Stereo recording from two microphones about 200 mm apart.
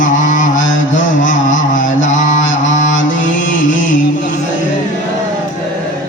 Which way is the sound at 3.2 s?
40° left (ahead or behind).